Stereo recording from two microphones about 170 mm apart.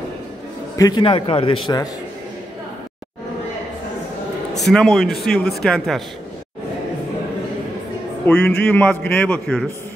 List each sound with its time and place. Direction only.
0.7 s a man's voice: 25° left (ahead or behind)
4.6 s a man's voice: centre (ahead or behind)
8.3 s a man's voice: 5° left (ahead or behind)